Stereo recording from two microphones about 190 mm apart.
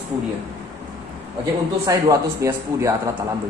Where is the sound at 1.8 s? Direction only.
15° right (ahead or behind).